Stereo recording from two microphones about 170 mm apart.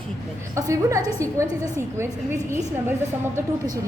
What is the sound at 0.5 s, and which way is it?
A woman's voice, 20° right (ahead or behind).